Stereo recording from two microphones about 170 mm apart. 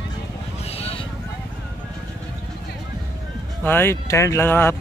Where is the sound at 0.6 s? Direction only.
35° left (ahead or behind).